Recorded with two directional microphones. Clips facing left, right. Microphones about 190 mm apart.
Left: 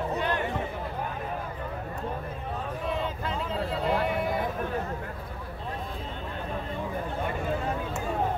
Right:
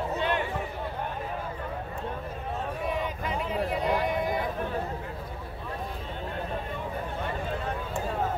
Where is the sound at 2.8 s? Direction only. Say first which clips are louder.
Left 1 dB; 15° right (ahead or behind).